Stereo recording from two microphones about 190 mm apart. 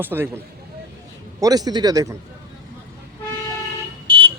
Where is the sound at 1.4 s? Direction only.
20° right (ahead or behind).